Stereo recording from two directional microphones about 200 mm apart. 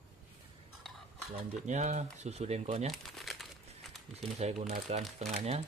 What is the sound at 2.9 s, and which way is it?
Crumpling, centre (ahead or behind).